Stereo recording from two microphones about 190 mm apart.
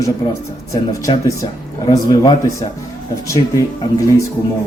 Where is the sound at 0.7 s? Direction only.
20° left (ahead or behind).